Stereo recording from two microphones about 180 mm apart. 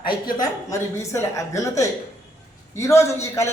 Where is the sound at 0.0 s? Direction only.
25° left (ahead or behind).